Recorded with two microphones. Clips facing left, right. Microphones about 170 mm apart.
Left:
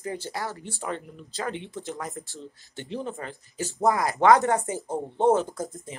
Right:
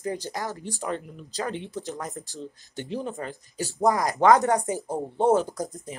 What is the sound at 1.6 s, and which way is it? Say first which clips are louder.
Speech: right 2 dB; 40° right (ahead or behind).